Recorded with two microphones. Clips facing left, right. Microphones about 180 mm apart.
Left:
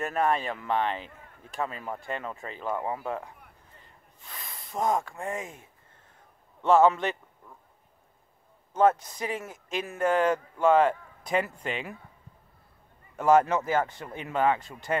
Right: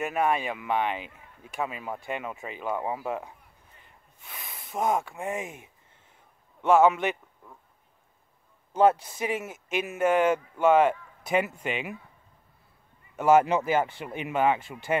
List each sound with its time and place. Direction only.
0.0 s speech: 10° right (ahead or behind)
3.8 s snort: 5° right (ahead or behind)
5.1 s speech: 20° right (ahead or behind)
6.6 s speech: 10° right (ahead or behind)
9.1 s speech: 20° right (ahead or behind)
13.3 s speech: 15° right (ahead or behind)